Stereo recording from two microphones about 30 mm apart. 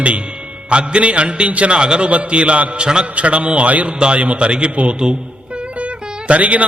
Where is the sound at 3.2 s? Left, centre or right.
Right.